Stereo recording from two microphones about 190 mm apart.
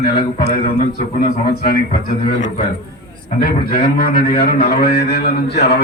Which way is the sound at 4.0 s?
55° left (ahead or behind).